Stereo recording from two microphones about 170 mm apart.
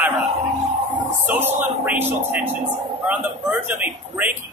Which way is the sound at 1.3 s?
10° right (ahead or behind).